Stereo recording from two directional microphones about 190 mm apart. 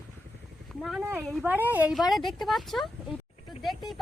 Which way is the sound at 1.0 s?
10° right (ahead or behind).